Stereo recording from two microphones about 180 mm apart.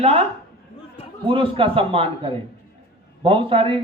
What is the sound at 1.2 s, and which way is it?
Speech, 30° right (ahead or behind).